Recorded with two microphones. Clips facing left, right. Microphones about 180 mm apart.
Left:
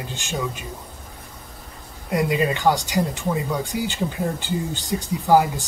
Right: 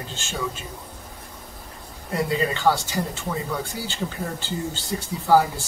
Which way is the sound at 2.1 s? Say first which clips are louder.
Left 3 dB; 15° left (ahead or behind).